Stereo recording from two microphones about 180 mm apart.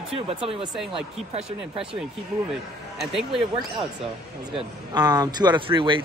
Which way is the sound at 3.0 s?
Centre (ahead or behind).